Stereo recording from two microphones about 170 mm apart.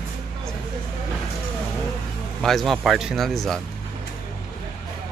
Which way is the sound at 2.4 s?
Centre (ahead or behind).